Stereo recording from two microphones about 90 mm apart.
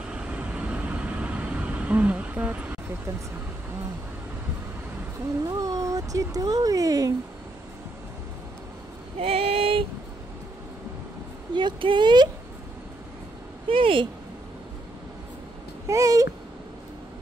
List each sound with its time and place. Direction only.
0.1 s vehicle: 15° right (ahead or behind)
5.4 s speech: 45° right (ahead or behind)
9.2 s female singing: 90° right
11.5 s speech: 60° right (ahead or behind)
13.7 s speech: 80° right
15.9 s speech: 40° right (ahead or behind)